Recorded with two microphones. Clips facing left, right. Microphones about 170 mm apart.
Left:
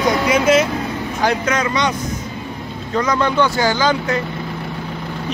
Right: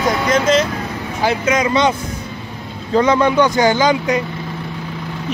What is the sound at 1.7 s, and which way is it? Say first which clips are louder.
Speech: right 4 dB; 25° right (ahead or behind).